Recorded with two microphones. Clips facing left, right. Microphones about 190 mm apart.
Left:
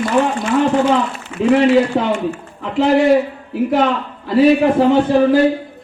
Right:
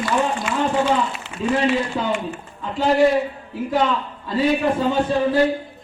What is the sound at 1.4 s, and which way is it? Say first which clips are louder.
Speech: left 8 dB; 90° left.